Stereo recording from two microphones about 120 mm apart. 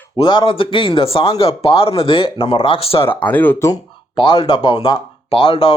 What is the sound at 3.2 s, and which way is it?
Speech, 15° left (ahead or behind).